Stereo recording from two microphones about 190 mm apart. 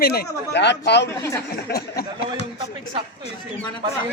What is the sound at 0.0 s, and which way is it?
Speech, 50° left (ahead or behind).